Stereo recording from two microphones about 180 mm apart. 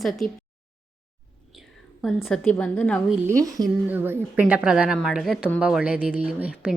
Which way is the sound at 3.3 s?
20° right (ahead or behind).